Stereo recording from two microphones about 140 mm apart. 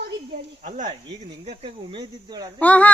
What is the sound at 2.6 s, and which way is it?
Speech, 10° left (ahead or behind).